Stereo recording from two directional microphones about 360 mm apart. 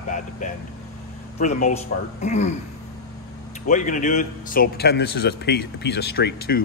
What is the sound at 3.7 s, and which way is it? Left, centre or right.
Speech, left.